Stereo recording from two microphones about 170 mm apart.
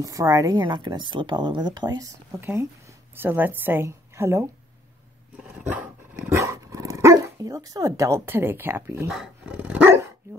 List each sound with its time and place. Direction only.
0.0 s a woman's voice: 20° right (ahead or behind)
5.6 s dog: 10° right (ahead or behind)